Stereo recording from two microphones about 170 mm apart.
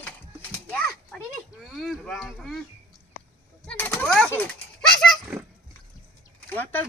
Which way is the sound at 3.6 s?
10° left (ahead or behind).